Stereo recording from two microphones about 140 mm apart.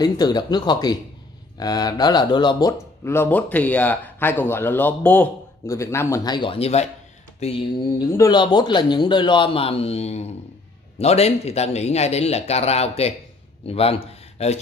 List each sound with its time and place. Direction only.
0.0 s speech: 30° left (ahead or behind)
3.0 s speech: 15° left (ahead or behind); by 7.6 s 45° left (ahead or behind)
8.2 s a man's voice: 30° left (ahead or behind); by 14.6 s 45° left (ahead or behind)